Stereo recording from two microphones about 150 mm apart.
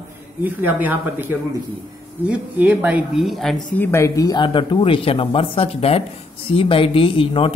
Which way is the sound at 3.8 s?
15° left (ahead or behind).